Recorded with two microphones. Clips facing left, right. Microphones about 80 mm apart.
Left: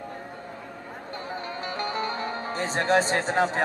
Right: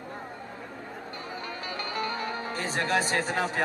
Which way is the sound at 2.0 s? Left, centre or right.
Left.